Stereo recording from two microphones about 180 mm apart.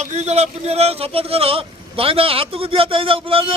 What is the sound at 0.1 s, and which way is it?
Speech, 40° right (ahead or behind).